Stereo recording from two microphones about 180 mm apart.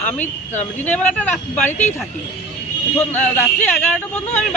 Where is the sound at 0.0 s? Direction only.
10° left (ahead or behind).